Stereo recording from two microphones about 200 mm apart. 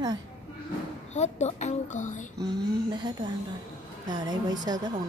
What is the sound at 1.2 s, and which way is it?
A child's voice, 35° left (ahead or behind).